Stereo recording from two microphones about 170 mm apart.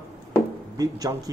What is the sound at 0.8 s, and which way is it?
Speech, 20° right (ahead or behind).